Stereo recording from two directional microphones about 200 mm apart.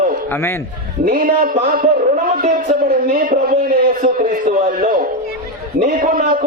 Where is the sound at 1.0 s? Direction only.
45° right (ahead or behind).